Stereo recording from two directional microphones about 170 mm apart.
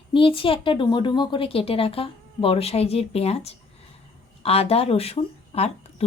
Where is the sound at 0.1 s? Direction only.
30° left (ahead or behind).